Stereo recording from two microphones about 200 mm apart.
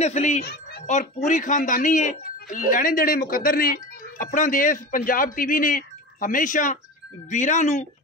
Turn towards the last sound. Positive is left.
turn(degrees=35)  # may be behind; listen again after turning